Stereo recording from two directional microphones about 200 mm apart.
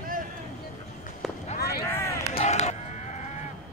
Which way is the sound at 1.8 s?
10° left (ahead or behind).